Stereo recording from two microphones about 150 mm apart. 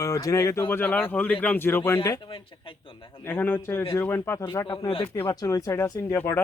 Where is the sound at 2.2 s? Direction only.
35° left (ahead or behind).